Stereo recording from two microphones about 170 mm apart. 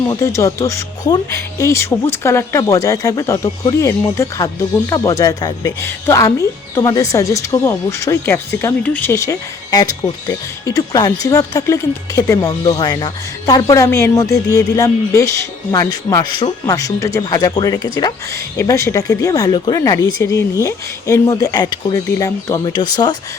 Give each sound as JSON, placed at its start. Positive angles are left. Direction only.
{"t": 0.1, "sound": "speech", "side_deg": 20}